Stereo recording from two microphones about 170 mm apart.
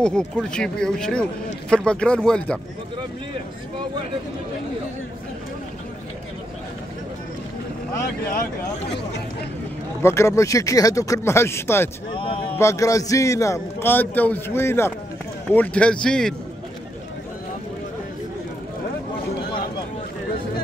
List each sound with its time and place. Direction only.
0.0 s speech: 5° left (ahead or behind)
10.0 s a man's voice: 15° left (ahead or behind)